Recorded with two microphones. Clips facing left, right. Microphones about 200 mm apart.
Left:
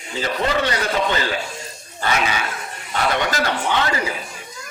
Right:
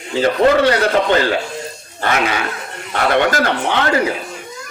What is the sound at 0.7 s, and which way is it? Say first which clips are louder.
A man's voice: right 7 dB; 55° right (ahead or behind).